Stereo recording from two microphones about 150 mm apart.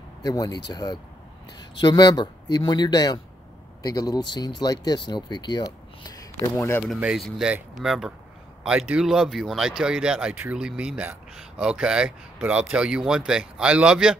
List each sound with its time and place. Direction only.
0.2 s speech: 25° left (ahead or behind)
7.0 s speech: centre (ahead or behind)